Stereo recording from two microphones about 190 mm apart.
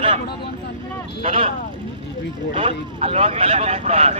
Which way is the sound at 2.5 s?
30° right (ahead or behind).